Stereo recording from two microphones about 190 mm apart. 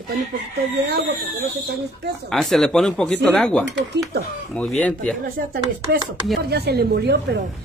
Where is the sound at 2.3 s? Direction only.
Centre (ahead or behind).